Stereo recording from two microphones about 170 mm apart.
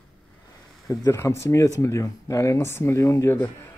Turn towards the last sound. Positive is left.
turn(degrees=15)  # may be behind; listen again after turning